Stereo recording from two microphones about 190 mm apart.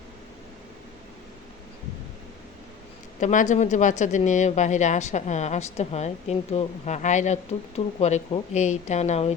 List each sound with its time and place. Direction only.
3.2 s speech: 40° left (ahead or behind)